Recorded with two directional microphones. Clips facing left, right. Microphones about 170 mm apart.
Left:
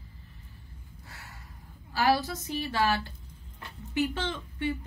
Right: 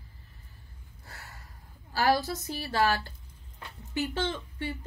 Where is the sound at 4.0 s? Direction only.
35° right (ahead or behind).